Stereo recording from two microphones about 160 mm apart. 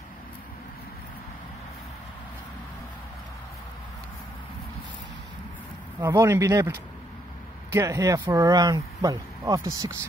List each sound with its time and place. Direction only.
6.0 s speech: 15° right (ahead or behind)